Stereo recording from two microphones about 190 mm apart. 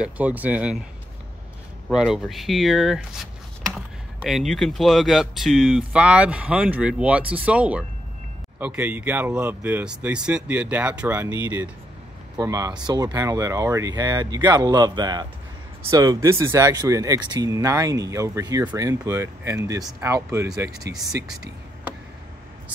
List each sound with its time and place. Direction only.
0.0 s speech: 10° right (ahead or behind)
1.9 s speech: centre (ahead or behind)